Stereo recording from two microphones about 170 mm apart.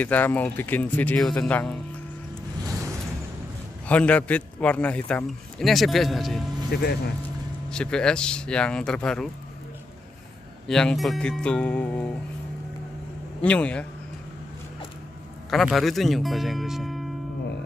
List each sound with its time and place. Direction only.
0.0 s a man's voice: 10° left (ahead or behind)
3.8 s a man's voice: 10° left (ahead or behind)
6.7 s speech: 70° left (ahead or behind)
7.7 s speech: 5° left (ahead or behind)
10.7 s speech: 5° left (ahead or behind)
13.4 s a man's voice: 5° left (ahead or behind)
15.5 s speech: centre (ahead or behind)